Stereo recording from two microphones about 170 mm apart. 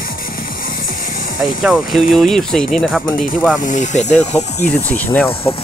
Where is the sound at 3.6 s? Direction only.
45° left (ahead or behind).